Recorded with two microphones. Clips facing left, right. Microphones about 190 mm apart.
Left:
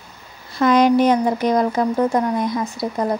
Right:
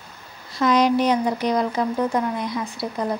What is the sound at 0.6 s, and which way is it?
Speech, 50° left (ahead or behind).